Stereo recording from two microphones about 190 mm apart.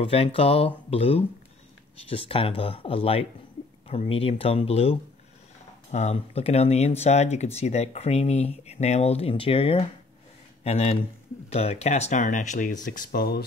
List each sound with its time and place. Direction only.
0.0 s speech: 30° left (ahead or behind); by 13.4 s 50° left (ahead or behind)